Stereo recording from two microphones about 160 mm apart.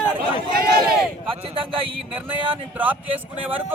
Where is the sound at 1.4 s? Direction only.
35° right (ahead or behind).